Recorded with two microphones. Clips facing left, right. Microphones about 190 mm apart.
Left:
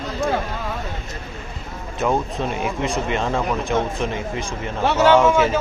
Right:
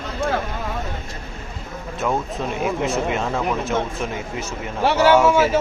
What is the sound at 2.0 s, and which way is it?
A man's voice, 5° left (ahead or behind).